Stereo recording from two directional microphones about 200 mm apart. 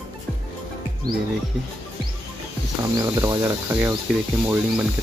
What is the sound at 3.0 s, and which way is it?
Speech, 20° right (ahead or behind).